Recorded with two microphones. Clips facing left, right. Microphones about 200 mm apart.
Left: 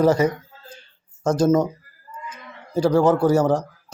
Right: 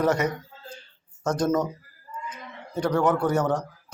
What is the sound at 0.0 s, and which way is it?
Speech, 30° left (ahead or behind).